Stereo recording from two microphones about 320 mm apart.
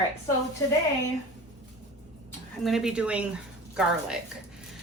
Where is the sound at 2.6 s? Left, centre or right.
Centre.